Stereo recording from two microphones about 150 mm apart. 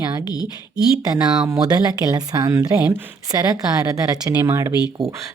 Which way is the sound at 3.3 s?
25° right (ahead or behind).